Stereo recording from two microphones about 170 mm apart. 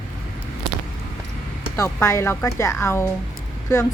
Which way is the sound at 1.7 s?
15° left (ahead or behind).